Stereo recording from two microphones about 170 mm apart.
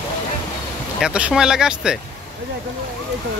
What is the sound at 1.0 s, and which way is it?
Speech, 5° right (ahead or behind).